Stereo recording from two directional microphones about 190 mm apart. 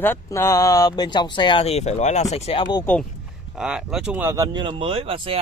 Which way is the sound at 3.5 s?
5° right (ahead or behind).